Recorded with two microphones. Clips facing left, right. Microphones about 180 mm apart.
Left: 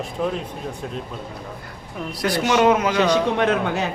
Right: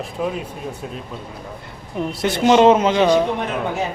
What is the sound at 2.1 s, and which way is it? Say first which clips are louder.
Speech: right 5 dB; 25° right (ahead or behind).